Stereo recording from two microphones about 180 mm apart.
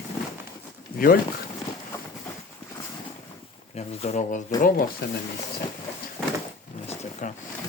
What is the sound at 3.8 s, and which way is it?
Speech, 40° left (ahead or behind).